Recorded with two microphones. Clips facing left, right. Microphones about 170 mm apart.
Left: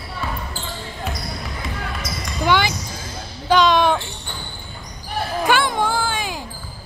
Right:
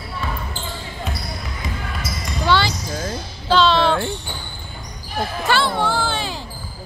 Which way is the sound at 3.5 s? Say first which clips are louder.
Left 1 dB; 15° left (ahead or behind).